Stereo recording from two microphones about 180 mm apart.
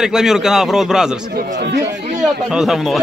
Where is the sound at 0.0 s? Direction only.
5° right (ahead or behind).